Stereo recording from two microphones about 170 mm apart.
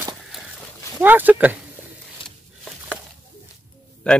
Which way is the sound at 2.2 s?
30° left (ahead or behind).